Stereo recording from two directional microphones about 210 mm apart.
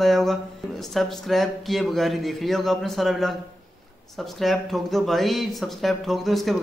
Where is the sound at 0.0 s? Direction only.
Centre (ahead or behind).